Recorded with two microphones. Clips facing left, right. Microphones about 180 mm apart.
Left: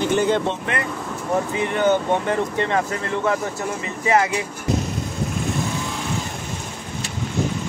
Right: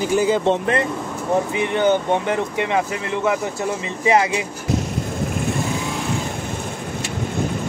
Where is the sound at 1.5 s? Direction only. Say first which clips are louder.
Left 1 dB; 20° right (ahead or behind).